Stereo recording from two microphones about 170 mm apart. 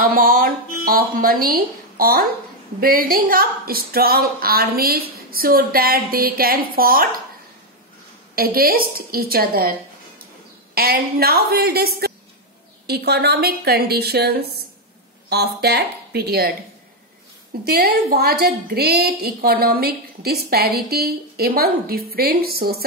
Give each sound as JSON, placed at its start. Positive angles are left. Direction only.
{"t": 0.0, "sound": "a woman's voice", "side_deg": -60}
{"t": 8.4, "sound": "a woman's voice", "side_deg": -60}
{"t": 17.6, "sound": "a woman's voice", "side_deg": -65}